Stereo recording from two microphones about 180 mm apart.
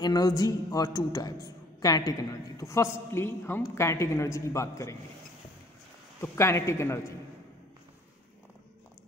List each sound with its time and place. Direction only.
0.0 s a man's voice: 20° left (ahead or behind)
6.2 s a man's voice: 15° left (ahead or behind)